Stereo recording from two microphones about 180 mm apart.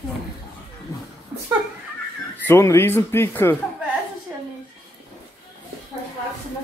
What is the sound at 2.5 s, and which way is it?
A man's voice, 15° left (ahead or behind).